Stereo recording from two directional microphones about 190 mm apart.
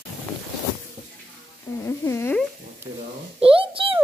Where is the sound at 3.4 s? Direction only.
30° right (ahead or behind).